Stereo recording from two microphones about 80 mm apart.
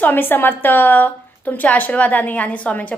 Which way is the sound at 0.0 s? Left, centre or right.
Left.